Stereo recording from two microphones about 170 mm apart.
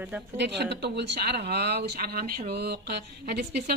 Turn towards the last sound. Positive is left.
turn(degrees=-70)  # may be behind; listen again after turning